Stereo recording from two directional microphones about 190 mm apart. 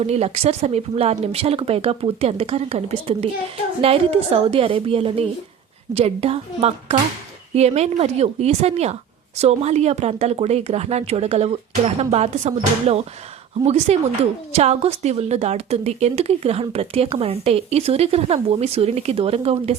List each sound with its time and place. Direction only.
0.0 s a woman's voice: 35° right (ahead or behind)